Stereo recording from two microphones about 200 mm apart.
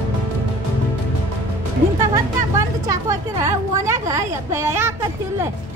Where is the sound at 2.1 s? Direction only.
15° right (ahead or behind).